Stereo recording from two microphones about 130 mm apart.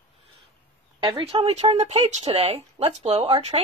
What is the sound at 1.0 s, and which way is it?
A woman's voice, 45° right (ahead or behind).